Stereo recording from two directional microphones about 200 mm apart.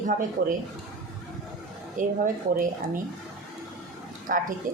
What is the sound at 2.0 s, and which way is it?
A woman's voice, 45° right (ahead or behind).